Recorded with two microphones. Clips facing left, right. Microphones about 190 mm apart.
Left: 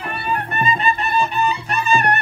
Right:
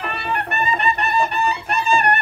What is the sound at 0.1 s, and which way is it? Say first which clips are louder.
Music: left 4 dB; 65° right (ahead or behind).